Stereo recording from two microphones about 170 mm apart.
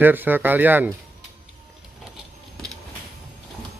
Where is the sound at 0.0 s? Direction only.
10° right (ahead or behind).